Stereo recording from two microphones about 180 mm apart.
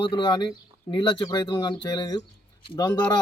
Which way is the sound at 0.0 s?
25° left (ahead or behind).